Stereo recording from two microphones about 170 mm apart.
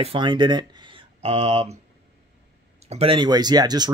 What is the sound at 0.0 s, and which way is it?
Speech, 30° right (ahead or behind).